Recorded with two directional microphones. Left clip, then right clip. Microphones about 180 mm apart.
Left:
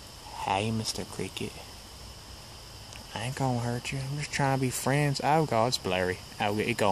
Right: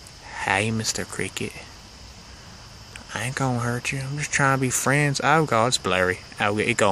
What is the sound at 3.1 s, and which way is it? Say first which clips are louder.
Speech: right 5 dB; 15° right (ahead or behind).